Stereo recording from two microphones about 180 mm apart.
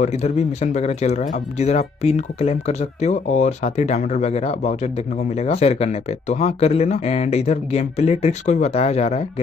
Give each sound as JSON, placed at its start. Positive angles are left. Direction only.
{"t": 0.0, "sound": "speech", "side_deg": 40}